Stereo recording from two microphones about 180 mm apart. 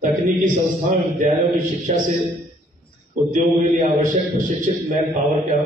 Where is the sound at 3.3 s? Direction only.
45° right (ahead or behind).